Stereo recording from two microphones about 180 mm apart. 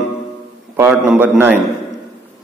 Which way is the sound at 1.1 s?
10° right (ahead or behind).